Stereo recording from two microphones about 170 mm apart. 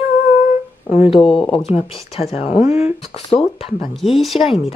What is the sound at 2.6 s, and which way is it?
Speech, 10° right (ahead or behind).